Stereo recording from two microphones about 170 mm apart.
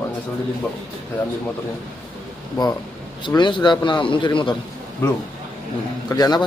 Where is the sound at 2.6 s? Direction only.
25° left (ahead or behind).